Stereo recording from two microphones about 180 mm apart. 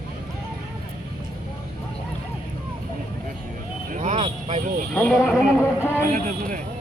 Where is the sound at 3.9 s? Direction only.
45° right (ahead or behind).